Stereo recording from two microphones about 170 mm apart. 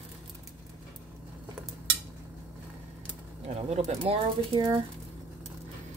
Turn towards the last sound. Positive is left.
turn(degrees=-30)  # may be behind; listen again after turning